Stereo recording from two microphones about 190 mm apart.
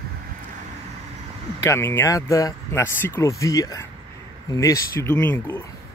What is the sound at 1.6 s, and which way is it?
Speech, 15° left (ahead or behind).